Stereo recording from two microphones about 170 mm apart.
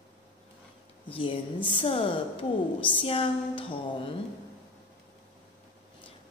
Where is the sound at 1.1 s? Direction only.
30° left (ahead or behind).